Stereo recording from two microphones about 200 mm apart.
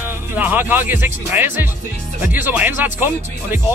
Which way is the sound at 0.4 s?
10° right (ahead or behind).